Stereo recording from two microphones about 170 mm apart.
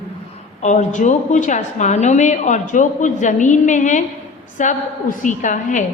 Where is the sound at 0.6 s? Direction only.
45° left (ahead or behind).